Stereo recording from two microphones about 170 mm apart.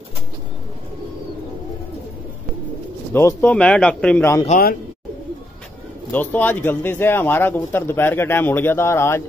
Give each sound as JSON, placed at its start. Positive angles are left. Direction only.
{"t": 3.1, "sound": "speech", "side_deg": 15}
{"t": 4.5, "sound": "a man's voice", "side_deg": 60}
{"t": 6.1, "sound": "speech", "side_deg": 10}